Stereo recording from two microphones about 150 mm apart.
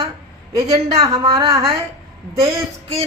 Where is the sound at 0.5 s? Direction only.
25° right (ahead or behind).